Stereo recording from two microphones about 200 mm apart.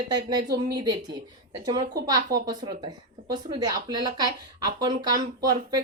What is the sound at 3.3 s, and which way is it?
Speech, 20° right (ahead or behind).